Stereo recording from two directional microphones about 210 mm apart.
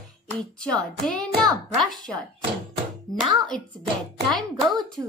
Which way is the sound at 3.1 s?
Centre (ahead or behind).